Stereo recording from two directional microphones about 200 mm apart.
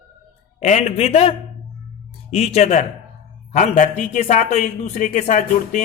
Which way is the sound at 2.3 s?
30° left (ahead or behind).